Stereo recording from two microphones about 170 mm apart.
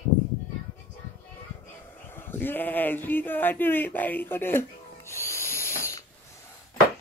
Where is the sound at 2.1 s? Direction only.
15° left (ahead or behind).